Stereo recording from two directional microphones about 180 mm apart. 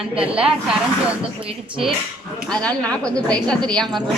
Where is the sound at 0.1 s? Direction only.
5° right (ahead or behind).